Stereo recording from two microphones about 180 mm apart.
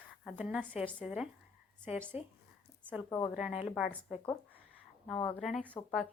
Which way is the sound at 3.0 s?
15° left (ahead or behind).